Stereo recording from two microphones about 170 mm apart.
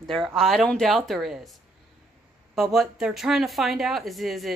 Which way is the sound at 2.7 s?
Centre (ahead or behind).